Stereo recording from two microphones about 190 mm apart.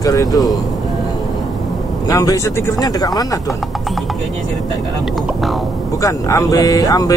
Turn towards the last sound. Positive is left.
turn(degrees=20)  # may be behind; listen again after turning